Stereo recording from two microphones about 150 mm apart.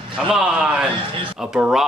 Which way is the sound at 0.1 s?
5° right (ahead or behind).